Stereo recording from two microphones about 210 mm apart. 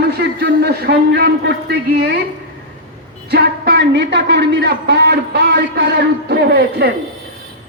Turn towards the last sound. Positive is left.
turn(degrees=-50)  # may be behind; listen again after turning